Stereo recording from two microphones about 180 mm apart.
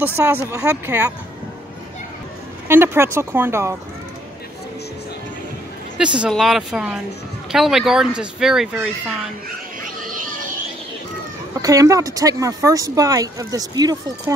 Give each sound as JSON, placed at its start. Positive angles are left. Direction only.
{"t": 0.0, "sound": "speech", "side_deg": -10}
{"t": 2.7, "sound": "speech", "side_deg": -15}
{"t": 5.9, "sound": "speech", "side_deg": -5}
{"t": 11.6, "sound": "speech", "side_deg": -20}